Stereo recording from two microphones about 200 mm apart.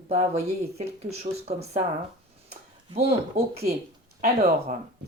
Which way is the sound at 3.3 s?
50° right (ahead or behind).